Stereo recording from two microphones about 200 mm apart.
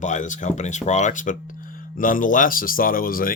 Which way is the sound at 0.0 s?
40° left (ahead or behind).